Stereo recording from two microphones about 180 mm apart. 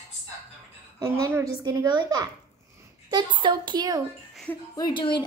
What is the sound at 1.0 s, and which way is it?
A woman's voice, 20° right (ahead or behind).